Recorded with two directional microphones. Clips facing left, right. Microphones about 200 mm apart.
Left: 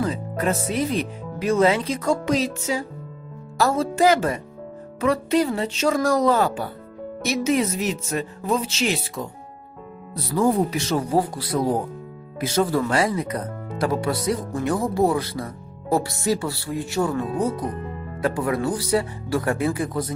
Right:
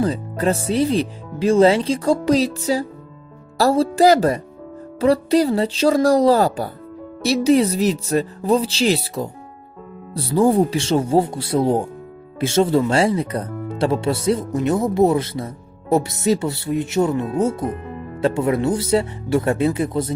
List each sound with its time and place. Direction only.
0.0 s speech: 35° right (ahead or behind)